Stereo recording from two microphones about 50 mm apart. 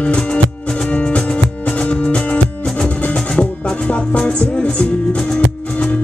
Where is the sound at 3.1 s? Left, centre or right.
Centre.